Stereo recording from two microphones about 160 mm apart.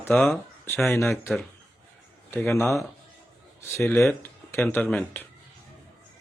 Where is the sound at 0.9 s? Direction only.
15° left (ahead or behind).